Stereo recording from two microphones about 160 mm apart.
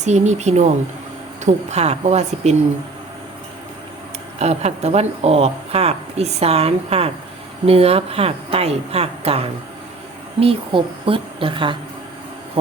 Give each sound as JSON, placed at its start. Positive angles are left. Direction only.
{"t": 0.0, "sound": "speech", "side_deg": -45}
{"t": 4.4, "sound": "speech", "side_deg": -40}